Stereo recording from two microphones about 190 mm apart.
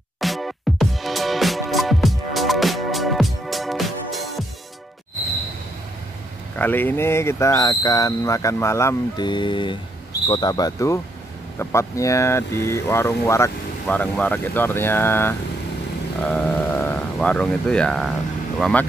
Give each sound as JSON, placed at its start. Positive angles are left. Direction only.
{"t": 0.2, "sound": "music", "side_deg": 0}
{"t": 6.6, "sound": "speech", "side_deg": 10}